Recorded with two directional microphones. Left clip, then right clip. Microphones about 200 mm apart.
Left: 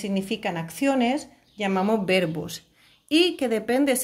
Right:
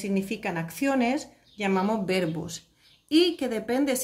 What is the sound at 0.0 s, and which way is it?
A woman's voice, 20° left (ahead or behind).